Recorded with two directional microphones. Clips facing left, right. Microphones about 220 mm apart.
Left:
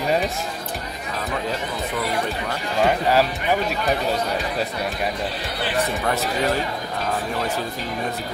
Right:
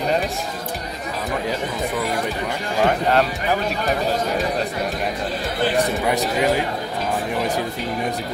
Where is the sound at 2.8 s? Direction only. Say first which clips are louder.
Even; centre (ahead or behind).